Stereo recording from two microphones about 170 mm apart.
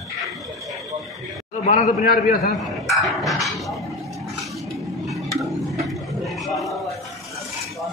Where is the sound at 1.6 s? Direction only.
60° left (ahead or behind).